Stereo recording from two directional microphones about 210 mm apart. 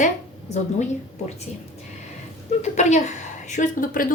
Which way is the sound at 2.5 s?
35° left (ahead or behind).